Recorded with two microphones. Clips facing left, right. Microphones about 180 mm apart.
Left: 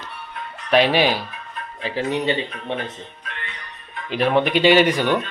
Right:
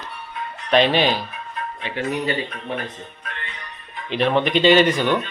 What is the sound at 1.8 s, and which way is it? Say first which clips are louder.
Speech: left 3 dB; 30° left (ahead or behind).